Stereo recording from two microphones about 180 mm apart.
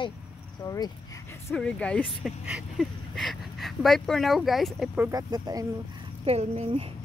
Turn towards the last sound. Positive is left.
turn(degrees=-35)  # may be behind; listen again after turning